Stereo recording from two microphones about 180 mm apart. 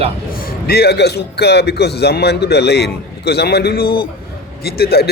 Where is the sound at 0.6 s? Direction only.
60° left (ahead or behind).